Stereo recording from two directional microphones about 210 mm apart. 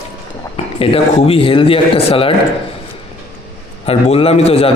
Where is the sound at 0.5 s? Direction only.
25° left (ahead or behind).